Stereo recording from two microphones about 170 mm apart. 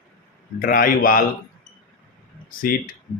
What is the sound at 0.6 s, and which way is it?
Speech, 55° left (ahead or behind).